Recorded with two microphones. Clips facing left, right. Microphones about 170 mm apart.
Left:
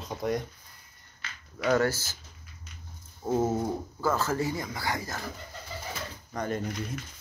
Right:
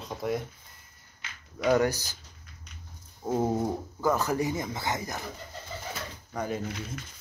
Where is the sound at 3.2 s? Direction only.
15° right (ahead or behind).